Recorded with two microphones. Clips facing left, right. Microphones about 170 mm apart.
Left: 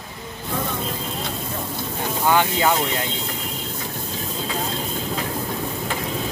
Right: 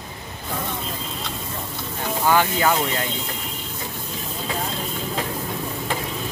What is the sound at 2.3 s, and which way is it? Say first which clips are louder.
Speech: even; 15° left (ahead or behind).